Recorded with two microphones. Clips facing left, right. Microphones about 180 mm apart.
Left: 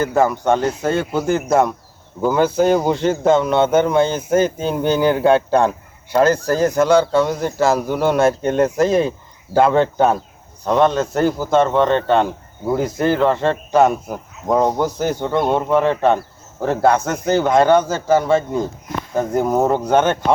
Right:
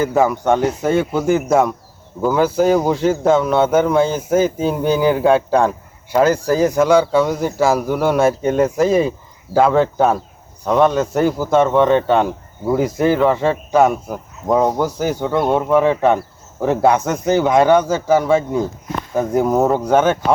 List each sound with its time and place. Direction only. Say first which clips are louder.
0.3 s speech: right 1 dB; 15° right (ahead or behind)
1.5 s speech: right 1 dB; centre (ahead or behind)